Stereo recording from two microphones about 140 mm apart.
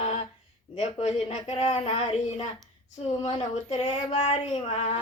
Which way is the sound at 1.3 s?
50° left (ahead or behind).